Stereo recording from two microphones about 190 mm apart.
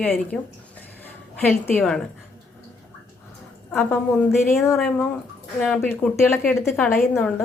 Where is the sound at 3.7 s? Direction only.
10° left (ahead or behind).